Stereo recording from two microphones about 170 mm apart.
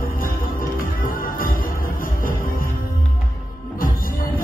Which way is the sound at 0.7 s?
55° left (ahead or behind).